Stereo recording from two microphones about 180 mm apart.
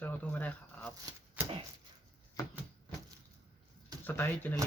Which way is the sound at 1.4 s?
10° right (ahead or behind).